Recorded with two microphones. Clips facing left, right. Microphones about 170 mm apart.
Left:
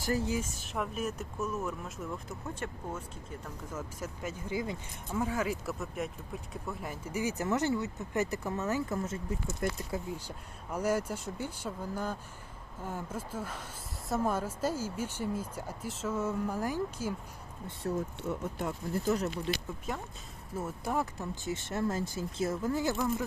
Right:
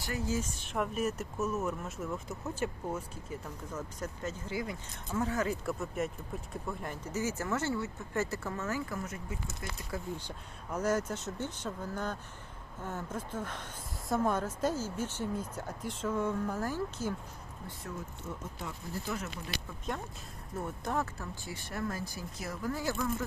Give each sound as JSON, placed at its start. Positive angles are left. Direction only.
{"t": 0.0, "sound": "speech", "side_deg": 35}
{"t": 0.6, "sound": "speech", "side_deg": 0}
{"t": 3.8, "sound": "speech", "side_deg": 10}
{"t": 5.1, "sound": "speech", "side_deg": 10}
{"t": 9.6, "sound": "speech", "side_deg": 55}
{"t": 10.1, "sound": "speech", "side_deg": 10}
{"t": 18.2, "sound": "speech", "side_deg": 70}
{"t": 19.0, "sound": "speech", "side_deg": 35}
{"t": 19.5, "sound": "speech", "side_deg": 25}
{"t": 19.9, "sound": "speech", "side_deg": 5}